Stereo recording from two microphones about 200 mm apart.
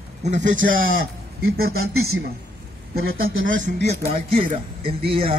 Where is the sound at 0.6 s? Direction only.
45° right (ahead or behind).